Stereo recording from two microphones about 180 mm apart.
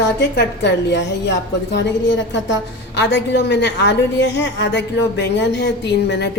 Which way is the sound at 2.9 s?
75° left (ahead or behind).